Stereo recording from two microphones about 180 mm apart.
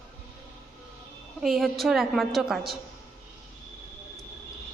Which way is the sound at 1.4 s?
Centre (ahead or behind).